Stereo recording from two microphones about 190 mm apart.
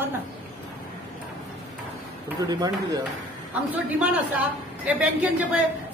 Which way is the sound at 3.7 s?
5° right (ahead or behind).